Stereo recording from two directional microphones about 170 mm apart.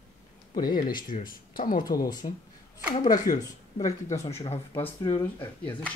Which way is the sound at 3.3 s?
45° left (ahead or behind).